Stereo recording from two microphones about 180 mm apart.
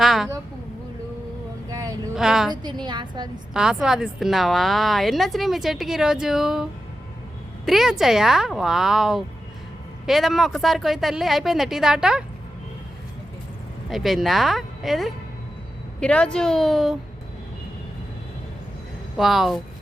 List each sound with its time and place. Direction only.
0.0 s a sound: centre (ahead or behind)
2.1 s a woman's voice: centre (ahead or behind)
2.5 s a woman's voice: 25° right (ahead or behind)
3.5 s a woman's voice: 5° right (ahead or behind)
13.9 s a woman's voice: centre (ahead or behind)
19.1 s a woman's voice: centre (ahead or behind)